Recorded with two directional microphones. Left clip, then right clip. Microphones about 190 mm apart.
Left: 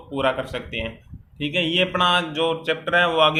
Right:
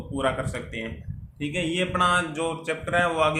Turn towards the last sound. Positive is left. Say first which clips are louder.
# left 5 dB
turn(degrees=30)  # may be behind; listen again after turning